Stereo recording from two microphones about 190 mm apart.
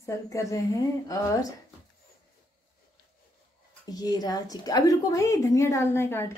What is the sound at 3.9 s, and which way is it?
A woman's voice, 20° left (ahead or behind).